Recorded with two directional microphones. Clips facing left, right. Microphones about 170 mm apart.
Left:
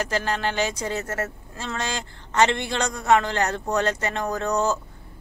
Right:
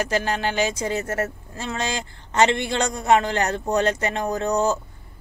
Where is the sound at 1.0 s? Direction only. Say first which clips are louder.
Right 3 dB; 30° right (ahead or behind).